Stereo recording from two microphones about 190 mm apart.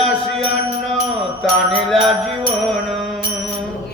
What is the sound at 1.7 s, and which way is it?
Music, centre (ahead or behind).